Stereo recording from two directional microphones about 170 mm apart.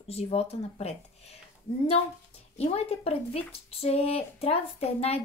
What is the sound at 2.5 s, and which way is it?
Speech, 35° left (ahead or behind).